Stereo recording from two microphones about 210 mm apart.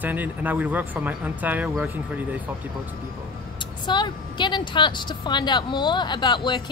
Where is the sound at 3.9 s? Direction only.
20° left (ahead or behind).